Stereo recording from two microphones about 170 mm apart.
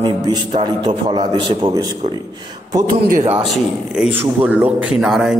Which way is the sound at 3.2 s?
35° right (ahead or behind).